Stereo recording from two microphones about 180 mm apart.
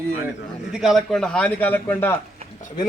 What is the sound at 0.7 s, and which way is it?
A man's voice, 5° right (ahead or behind).